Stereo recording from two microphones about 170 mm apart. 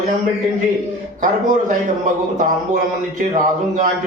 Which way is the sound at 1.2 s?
50° right (ahead or behind).